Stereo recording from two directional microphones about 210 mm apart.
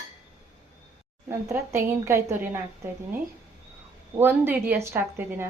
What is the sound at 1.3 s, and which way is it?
A woman's voice, 10° right (ahead or behind).